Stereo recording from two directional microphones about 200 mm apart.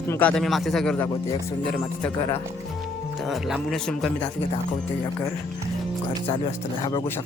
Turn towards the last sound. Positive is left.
turn(degrees=25)  # may be behind; listen again after turning